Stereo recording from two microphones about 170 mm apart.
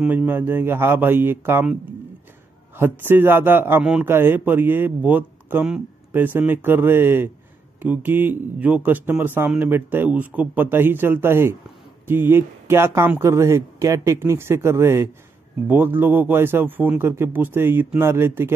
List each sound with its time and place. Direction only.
0.0 s a man's voice: 10° right (ahead or behind)